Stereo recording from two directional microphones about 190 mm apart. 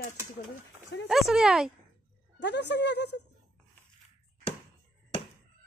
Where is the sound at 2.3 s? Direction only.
65° left (ahead or behind).